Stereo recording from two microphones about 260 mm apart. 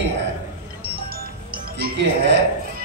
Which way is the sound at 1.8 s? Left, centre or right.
Right.